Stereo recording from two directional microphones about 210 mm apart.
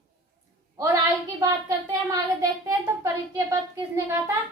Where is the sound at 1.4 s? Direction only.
15° right (ahead or behind).